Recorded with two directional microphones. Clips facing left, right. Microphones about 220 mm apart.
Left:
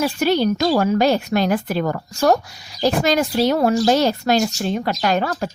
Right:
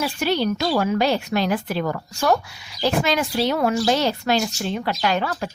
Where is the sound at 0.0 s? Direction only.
45° left (ahead or behind).